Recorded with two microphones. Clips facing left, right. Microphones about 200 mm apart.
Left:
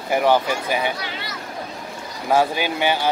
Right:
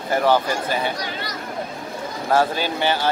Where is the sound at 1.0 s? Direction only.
40° right (ahead or behind).